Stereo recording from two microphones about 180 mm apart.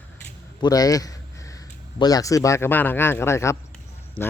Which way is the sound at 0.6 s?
20° left (ahead or behind).